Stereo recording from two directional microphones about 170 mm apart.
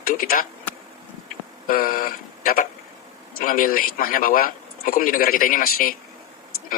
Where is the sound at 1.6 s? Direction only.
55° left (ahead or behind).